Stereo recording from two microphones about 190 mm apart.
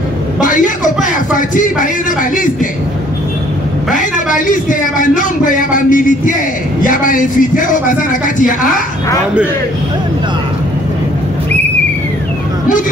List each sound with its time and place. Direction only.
0.4 s music: 45° left (ahead or behind)
2.3 s a man's voice: 45° left (ahead or behind)
3.9 s a sound: 45° left (ahead or behind)
6.8 s a man's voice: 45° left (ahead or behind)